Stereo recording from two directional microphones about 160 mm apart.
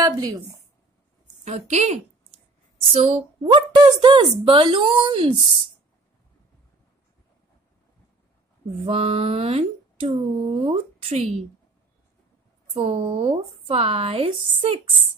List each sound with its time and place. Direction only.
0.0 s speech: 25° right (ahead or behind)
1.4 s a woman's voice: 45° right (ahead or behind)
8.8 s speech: 40° right (ahead or behind)
12.7 s speech: 40° right (ahead or behind)